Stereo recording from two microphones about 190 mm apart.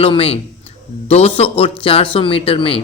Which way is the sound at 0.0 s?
30° left (ahead or behind).